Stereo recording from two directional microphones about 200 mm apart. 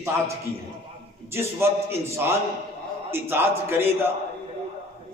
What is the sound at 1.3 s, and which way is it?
A man's voice, 10° right (ahead or behind).